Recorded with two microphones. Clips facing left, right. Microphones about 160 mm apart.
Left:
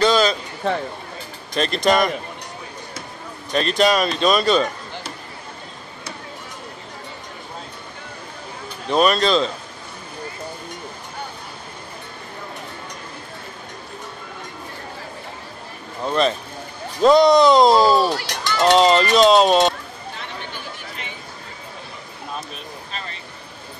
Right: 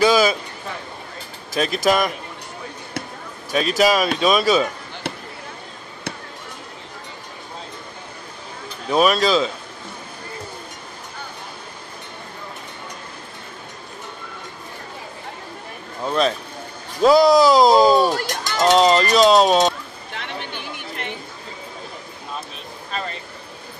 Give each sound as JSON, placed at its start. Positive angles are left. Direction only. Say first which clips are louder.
{"t": 0.0, "sound": "a sound", "louder": "right 1 dB", "side_deg": -10}
{"t": 1.5, "sound": "speech", "louder": "even", "side_deg": -5}
{"t": 3.5, "sound": "speech", "louder": "even", "side_deg": -5}
{"t": 8.8, "sound": "speech", "louder": "even", "side_deg": -5}
{"t": 16.0, "sound": "speech", "louder": "even", "side_deg": 0}
{"t": 18.0, "sound": "speech", "louder": "right 2 dB", "side_deg": -45}
{"t": 18.6, "sound": "speech", "louder": "even", "side_deg": 0}